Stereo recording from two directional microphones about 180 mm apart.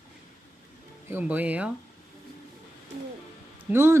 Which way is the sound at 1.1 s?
10° right (ahead or behind).